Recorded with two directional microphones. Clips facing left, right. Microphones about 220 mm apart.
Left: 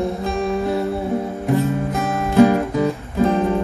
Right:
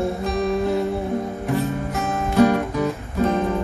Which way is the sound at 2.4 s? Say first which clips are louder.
Left 3 dB; 30° left (ahead or behind).